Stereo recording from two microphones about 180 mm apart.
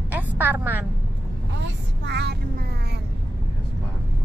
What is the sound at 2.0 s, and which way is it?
Music, 70° right (ahead or behind).